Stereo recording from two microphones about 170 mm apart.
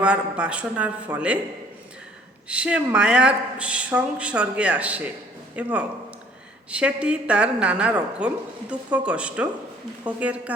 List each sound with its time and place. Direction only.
0.0 s speech: 5° right (ahead or behind)
2.5 s speech: 5° right (ahead or behind)